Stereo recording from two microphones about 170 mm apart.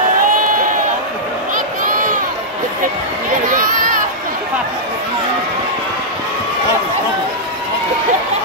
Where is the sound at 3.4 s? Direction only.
50° right (ahead or behind).